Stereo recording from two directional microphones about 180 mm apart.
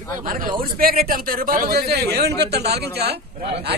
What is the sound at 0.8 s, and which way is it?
Speech, 55° right (ahead or behind).